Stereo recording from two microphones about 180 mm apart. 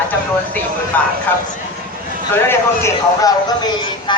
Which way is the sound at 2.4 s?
15° left (ahead or behind).